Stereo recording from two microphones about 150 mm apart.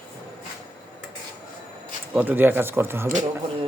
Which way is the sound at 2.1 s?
10° right (ahead or behind).